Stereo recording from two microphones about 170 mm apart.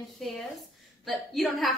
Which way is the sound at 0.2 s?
Centre (ahead or behind).